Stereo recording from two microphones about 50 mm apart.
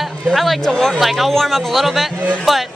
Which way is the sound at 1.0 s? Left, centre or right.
Centre.